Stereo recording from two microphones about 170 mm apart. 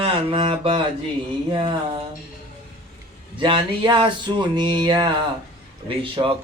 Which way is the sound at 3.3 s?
30° right (ahead or behind).